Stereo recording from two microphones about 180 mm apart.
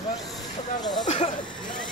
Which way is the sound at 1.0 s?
35° left (ahead or behind).